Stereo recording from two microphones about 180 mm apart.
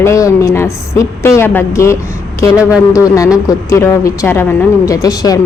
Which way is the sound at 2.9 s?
15° left (ahead or behind).